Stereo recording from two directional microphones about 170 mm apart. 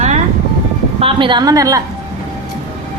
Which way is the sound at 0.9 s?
30° right (ahead or behind).